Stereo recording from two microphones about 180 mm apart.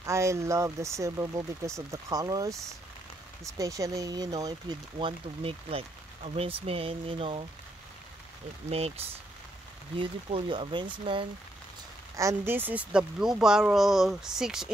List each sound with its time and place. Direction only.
0.0 s speech: 15° right (ahead or behind); by 7.4 s 30° right (ahead or behind)
8.6 s speech: 35° right (ahead or behind)
9.9 s speech: 30° right (ahead or behind)
12.2 s speech: 15° right (ahead or behind)